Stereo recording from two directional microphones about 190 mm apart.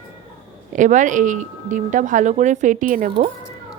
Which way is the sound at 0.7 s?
40° right (ahead or behind).